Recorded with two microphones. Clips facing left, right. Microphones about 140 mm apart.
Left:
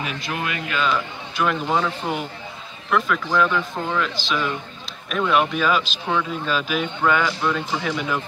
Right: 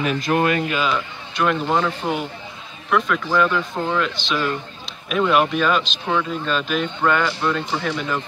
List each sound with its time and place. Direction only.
0.0 s speech: 45° right (ahead or behind)
0.8 s speech: centre (ahead or behind)